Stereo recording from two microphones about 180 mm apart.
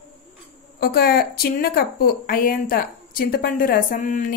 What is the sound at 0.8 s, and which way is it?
A woman's voice, 55° left (ahead or behind).